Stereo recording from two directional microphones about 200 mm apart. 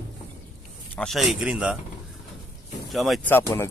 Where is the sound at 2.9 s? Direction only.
Centre (ahead or behind).